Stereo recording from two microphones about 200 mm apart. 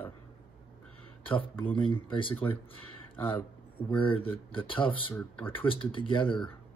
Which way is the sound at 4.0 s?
25° left (ahead or behind).